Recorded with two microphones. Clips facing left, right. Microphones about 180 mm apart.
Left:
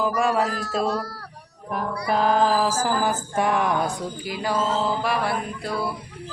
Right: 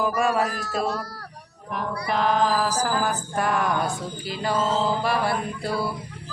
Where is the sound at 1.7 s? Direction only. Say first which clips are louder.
Left 2 dB; 40° left (ahead or behind).